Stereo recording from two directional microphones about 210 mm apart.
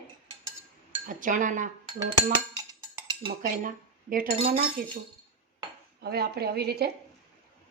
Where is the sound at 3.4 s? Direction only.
40° right (ahead or behind).